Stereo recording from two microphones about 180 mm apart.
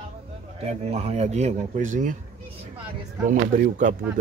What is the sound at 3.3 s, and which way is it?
Speech, 45° right (ahead or behind).